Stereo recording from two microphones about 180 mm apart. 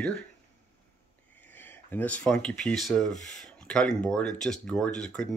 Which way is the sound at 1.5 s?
10° left (ahead or behind).